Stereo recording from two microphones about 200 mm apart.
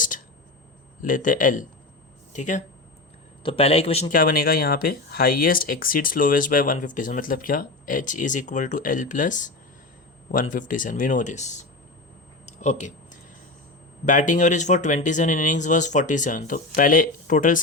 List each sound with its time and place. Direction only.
1.0 s a man's voice: 40° left (ahead or behind)
4.1 s speech: 45° left (ahead or behind)
12.5 s a sound: 35° left (ahead or behind)
14.0 s speech: 40° left (ahead or behind)